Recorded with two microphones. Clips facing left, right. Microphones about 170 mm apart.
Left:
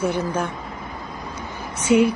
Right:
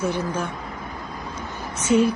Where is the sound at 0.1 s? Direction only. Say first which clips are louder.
Left 2 dB; 60° left (ahead or behind).